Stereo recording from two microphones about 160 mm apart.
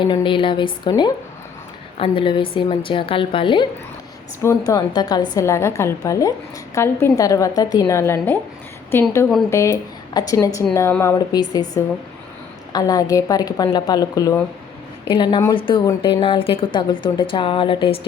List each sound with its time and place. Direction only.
0.0 s a woman's voice: 30° left (ahead or behind)